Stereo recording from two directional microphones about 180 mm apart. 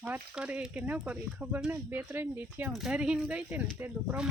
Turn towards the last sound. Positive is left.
turn(degrees=-10)  # may be behind; listen again after turning